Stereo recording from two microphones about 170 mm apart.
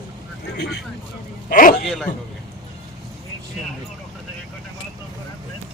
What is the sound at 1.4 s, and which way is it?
Speech, 55° left (ahead or behind).